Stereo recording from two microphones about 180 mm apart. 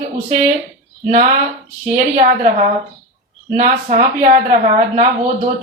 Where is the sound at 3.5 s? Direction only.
45° right (ahead or behind).